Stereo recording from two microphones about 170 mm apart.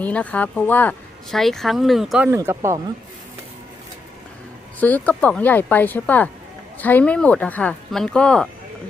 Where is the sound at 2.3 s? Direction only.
15° right (ahead or behind).